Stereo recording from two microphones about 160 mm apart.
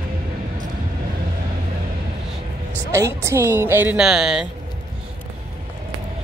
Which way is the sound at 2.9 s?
15° right (ahead or behind).